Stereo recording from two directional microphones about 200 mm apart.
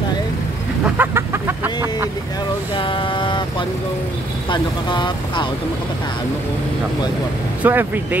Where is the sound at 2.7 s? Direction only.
25° left (ahead or behind).